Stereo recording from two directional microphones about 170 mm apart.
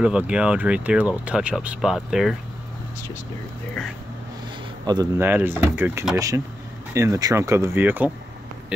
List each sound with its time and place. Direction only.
0.0 s speech: 5° right (ahead or behind)
4.8 s speech: 25° right (ahead or behind)
5.2 s speech: 10° right (ahead or behind)